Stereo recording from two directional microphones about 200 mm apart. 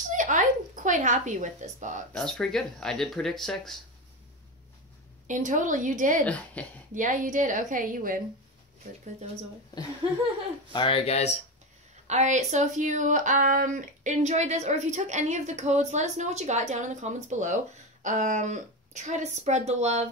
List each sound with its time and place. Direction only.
0.1 s a sound: 40° right (ahead or behind)
2.1 s speech: 5° left (ahead or behind)
5.2 s speech: 40° right (ahead or behind)
6.2 s a woman's voice: 5° left (ahead or behind)
6.9 s speech: 40° right (ahead or behind)
10.7 s speech: 25° left (ahead or behind)
12.1 s speech: 35° right (ahead or behind)